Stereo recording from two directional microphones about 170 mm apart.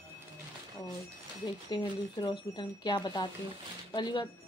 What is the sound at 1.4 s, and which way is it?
Speech, 25° left (ahead or behind).